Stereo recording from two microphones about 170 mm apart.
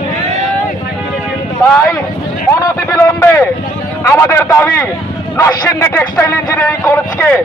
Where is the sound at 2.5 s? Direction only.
20° left (ahead or behind).